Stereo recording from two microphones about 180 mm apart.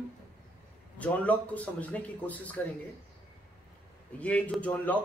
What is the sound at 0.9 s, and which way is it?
A man's voice, 10° left (ahead or behind).